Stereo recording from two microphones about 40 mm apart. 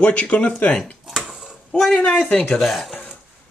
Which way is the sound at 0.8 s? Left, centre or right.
Centre.